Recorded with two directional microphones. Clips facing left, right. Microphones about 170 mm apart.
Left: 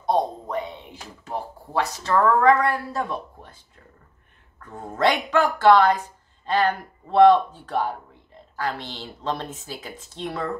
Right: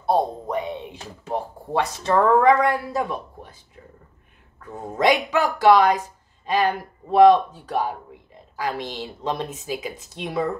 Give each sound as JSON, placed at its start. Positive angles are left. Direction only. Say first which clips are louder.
{"t": 0.5, "sound": "speech", "louder": "right 3 dB", "side_deg": -20}
{"t": 4.6, "sound": "speech", "louder": "right 1 dB", "side_deg": -10}